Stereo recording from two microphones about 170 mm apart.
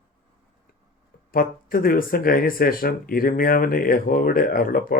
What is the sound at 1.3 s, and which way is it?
Speech, 60° left (ahead or behind).